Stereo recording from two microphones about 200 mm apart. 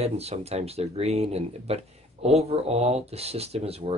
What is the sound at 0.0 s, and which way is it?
Speech, 30° right (ahead or behind).